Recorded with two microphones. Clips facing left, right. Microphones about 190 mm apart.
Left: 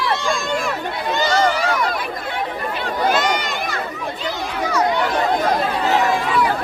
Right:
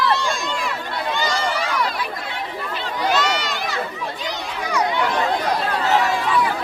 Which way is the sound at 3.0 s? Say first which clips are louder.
Left 1 dB; 50° left (ahead or behind).